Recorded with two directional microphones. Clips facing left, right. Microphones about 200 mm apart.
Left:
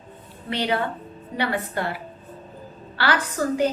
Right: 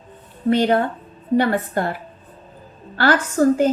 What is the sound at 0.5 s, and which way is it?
A woman's voice, 45° right (ahead or behind).